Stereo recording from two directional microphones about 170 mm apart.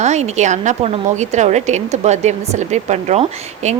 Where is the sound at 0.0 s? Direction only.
45° right (ahead or behind).